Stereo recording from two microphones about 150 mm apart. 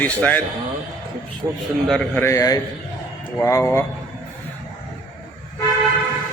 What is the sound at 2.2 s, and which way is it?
A man's voice, 20° left (ahead or behind).